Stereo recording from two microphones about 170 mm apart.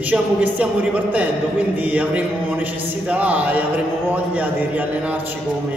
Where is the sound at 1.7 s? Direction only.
10° right (ahead or behind).